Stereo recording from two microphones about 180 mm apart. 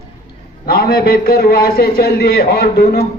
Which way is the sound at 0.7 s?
60° left (ahead or behind).